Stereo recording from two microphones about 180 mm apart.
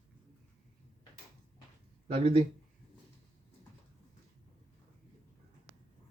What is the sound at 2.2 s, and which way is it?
Speech, 35° right (ahead or behind).